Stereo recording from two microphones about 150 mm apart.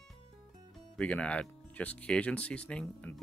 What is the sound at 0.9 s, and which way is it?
Speech, 10° left (ahead or behind).